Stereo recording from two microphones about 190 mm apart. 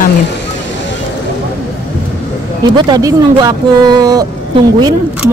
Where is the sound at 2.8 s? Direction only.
20° right (ahead or behind).